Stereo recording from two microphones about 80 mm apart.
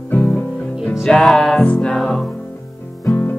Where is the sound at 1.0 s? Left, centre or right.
Centre.